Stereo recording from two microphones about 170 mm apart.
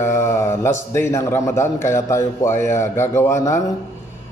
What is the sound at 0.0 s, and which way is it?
Mantra, 15° left (ahead or behind).